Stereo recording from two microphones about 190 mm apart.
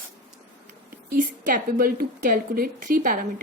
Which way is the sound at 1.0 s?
45° right (ahead or behind).